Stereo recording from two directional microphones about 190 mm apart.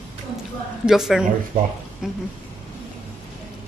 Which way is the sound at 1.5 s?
30° right (ahead or behind).